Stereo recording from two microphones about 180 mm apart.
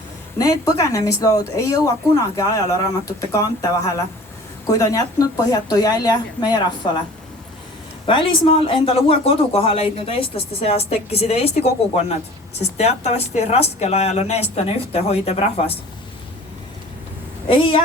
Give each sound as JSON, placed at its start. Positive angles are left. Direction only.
{"t": 0.3, "sound": "speech", "side_deg": 20}
{"t": 8.0, "sound": "speech", "side_deg": 30}
{"t": 17.5, "sound": "speech", "side_deg": 30}